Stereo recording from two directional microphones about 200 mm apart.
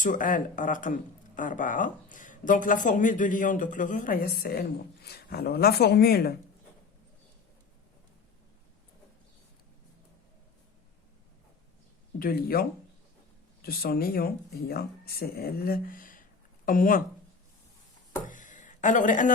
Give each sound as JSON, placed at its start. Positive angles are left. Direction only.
{"t": 0.0, "sound": "speech", "side_deg": 40}
{"t": 12.2, "sound": "speech", "side_deg": 50}
{"t": 18.3, "sound": "a sound", "side_deg": 40}